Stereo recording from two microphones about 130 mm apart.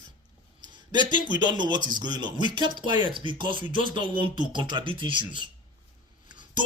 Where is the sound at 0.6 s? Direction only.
35° right (ahead or behind).